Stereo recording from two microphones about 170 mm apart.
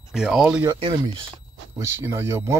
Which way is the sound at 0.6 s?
30° right (ahead or behind).